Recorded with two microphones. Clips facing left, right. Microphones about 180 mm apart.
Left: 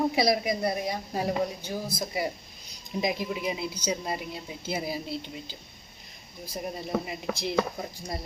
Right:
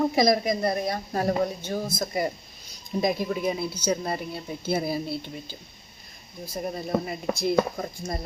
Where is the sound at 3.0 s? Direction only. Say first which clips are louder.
Right 4 dB; 40° right (ahead or behind).